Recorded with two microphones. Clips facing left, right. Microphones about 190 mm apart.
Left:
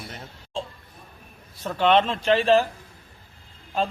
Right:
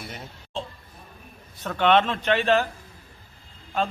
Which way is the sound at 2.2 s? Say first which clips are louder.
Left 2 dB; 35° left (ahead or behind).